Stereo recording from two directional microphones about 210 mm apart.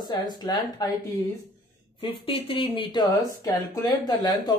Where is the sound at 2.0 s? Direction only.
25° left (ahead or behind).